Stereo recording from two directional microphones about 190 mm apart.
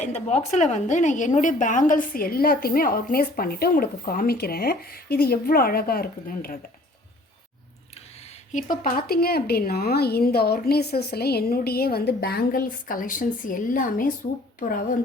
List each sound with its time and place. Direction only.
0.0 s a woman's voice: 35° left (ahead or behind)
8.5 s a woman's voice: 45° left (ahead or behind)